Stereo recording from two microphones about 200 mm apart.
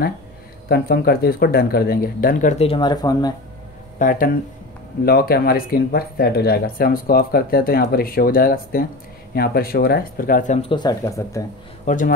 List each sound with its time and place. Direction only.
0.7 s speech: 50° left (ahead or behind); by 3.3 s 20° left (ahead or behind)
4.0 s speech: 45° left (ahead or behind)
10.7 s speech: 20° left (ahead or behind)
11.8 s speech: 40° left (ahead or behind)